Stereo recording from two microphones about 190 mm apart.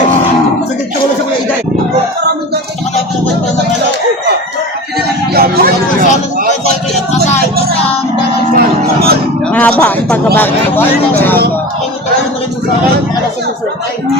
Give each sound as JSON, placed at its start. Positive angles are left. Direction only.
{"t": 5.3, "sound": "vehicle", "side_deg": -55}
{"t": 8.5, "sound": "music", "side_deg": -55}
{"t": 9.5, "sound": "a sound", "side_deg": 10}
{"t": 10.3, "sound": "speech", "side_deg": 10}